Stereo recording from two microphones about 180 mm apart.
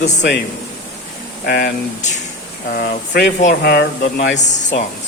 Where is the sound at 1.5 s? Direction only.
60° left (ahead or behind).